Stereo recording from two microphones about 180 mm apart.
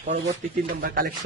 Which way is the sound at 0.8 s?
55° right (ahead or behind).